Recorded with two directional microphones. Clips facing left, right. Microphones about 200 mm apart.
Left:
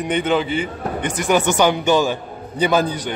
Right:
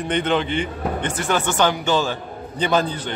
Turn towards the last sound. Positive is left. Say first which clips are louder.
# left 3 dB
turn(degrees=10)  # may be behind; listen again after turning